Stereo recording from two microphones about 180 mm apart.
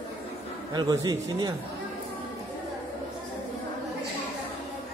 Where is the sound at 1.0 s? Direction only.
20° right (ahead or behind).